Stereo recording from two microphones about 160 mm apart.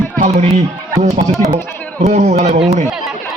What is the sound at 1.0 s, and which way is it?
Speech, 45° right (ahead or behind).